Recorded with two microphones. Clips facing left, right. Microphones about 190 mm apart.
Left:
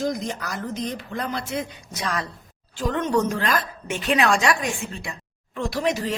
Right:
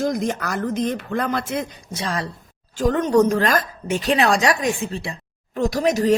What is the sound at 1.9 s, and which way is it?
Speech, 30° right (ahead or behind).